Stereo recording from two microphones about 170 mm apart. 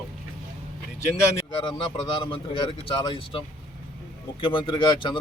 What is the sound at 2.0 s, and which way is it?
Speech, 30° left (ahead or behind).